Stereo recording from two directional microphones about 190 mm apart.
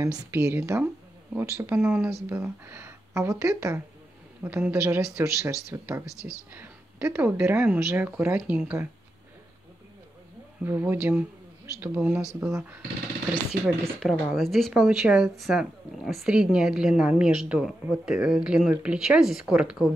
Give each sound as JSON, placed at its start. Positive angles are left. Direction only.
{"t": 0.1, "sound": "speech", "side_deg": -5}
{"t": 0.4, "sound": "speech", "side_deg": -15}
{"t": 10.6, "sound": "speech", "side_deg": -10}
{"t": 13.9, "sound": "speech", "side_deg": 0}